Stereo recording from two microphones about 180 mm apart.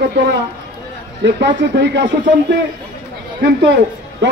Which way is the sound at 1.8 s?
75° right (ahead or behind).